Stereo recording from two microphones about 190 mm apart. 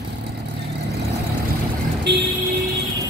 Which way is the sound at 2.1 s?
60° right (ahead or behind).